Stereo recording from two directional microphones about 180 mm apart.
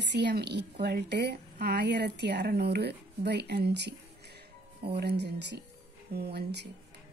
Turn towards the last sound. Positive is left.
turn(degrees=-65)  # may be behind; listen again after turning